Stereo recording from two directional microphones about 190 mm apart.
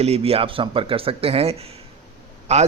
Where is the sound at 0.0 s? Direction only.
30° right (ahead or behind).